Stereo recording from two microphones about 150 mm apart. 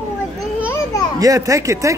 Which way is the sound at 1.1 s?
25° right (ahead or behind).